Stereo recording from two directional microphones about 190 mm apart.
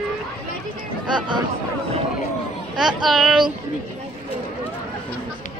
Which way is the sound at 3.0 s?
Centre (ahead or behind).